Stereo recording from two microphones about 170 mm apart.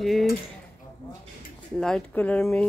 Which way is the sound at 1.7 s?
5° left (ahead or behind).